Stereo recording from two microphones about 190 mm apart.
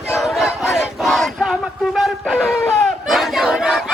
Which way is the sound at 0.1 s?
Centre (ahead or behind).